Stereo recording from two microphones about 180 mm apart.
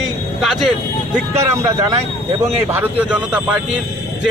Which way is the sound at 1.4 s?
15° right (ahead or behind).